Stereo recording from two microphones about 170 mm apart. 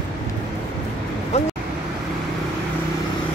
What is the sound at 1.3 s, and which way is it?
Speech, 40° left (ahead or behind).